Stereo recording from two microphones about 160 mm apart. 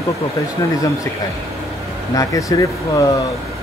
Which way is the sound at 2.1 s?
20° left (ahead or behind).